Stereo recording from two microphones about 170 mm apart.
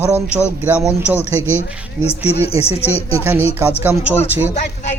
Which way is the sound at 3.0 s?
35° left (ahead or behind).